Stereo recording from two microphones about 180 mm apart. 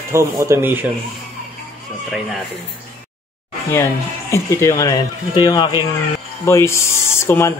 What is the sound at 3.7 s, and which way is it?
Speech, 15° left (ahead or behind).